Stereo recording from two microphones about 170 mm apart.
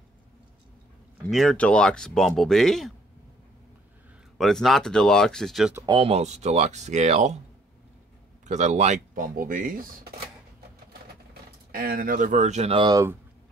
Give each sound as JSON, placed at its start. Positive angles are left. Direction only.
{"t": 1.3, "sound": "speech", "side_deg": 0}
{"t": 4.4, "sound": "speech", "side_deg": 0}
{"t": 5.9, "sound": "speech", "side_deg": -35}
{"t": 8.5, "sound": "speech", "side_deg": -45}
{"t": 11.7, "sound": "speech", "side_deg": -60}